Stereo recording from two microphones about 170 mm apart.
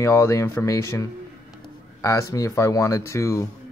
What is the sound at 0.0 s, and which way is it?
Speech, 15° left (ahead or behind).